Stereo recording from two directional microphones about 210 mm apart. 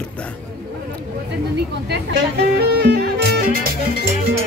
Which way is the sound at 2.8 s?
50° right (ahead or behind).